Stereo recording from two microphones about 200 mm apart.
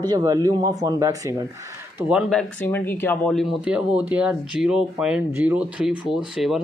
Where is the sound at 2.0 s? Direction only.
5° right (ahead or behind).